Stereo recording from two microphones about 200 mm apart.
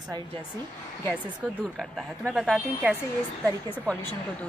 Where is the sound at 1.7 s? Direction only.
Centre (ahead or behind).